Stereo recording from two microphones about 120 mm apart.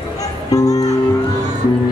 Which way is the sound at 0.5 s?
30° left (ahead or behind).